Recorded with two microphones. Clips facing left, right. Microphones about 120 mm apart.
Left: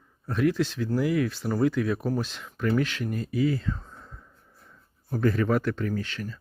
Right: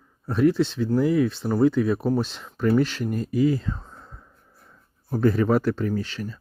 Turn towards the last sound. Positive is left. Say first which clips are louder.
# right 3 dB
turn(degrees=-30)  # may be behind; listen again after turning